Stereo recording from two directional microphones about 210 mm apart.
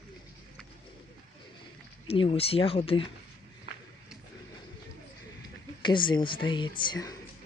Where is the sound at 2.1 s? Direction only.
25° left (ahead or behind).